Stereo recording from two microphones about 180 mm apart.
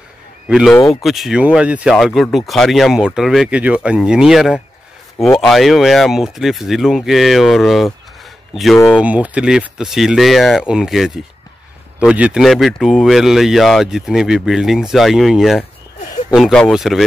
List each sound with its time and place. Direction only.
0.5 s speech: centre (ahead or behind)
5.1 s speech: 15° left (ahead or behind)
5.4 s speech: centre (ahead or behind)
8.7 s speech: 15° left (ahead or behind)
9.0 s speech: 10° right (ahead or behind)